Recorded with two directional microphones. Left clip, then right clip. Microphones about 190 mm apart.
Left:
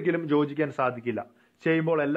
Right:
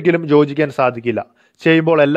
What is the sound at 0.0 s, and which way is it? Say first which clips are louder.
A man's voice: right 12 dB; 40° right (ahead or behind).